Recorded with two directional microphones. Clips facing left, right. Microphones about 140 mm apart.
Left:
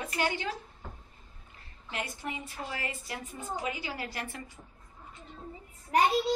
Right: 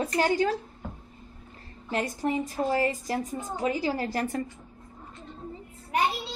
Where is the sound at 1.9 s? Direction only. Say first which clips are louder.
Right 9 dB; 40° right (ahead or behind).